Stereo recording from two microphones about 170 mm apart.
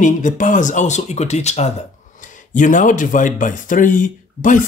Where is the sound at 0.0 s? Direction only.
50° left (ahead or behind).